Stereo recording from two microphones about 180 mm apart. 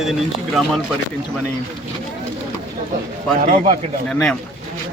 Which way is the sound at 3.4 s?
45° right (ahead or behind).